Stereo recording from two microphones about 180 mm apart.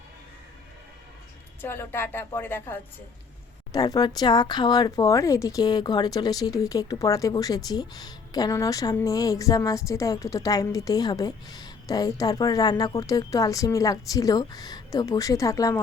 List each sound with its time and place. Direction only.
1.6 s speech: 15° left (ahead or behind)